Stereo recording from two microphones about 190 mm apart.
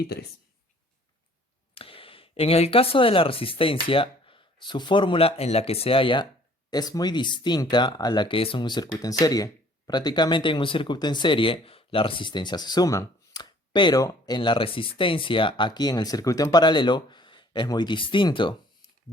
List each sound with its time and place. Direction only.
1.7 s speech: 30° left (ahead or behind)